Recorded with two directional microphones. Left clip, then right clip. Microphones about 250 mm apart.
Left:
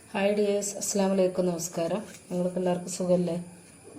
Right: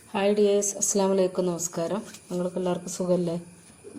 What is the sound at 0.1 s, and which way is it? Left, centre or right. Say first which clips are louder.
A woman's voice: right 3 dB; right.